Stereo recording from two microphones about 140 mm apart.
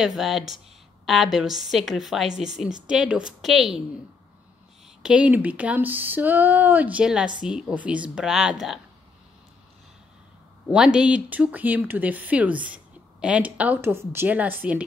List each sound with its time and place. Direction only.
0.0 s a woman's voice: centre (ahead or behind)
5.0 s a woman's voice: 5° right (ahead or behind)
10.7 s speech: 5° right (ahead or behind)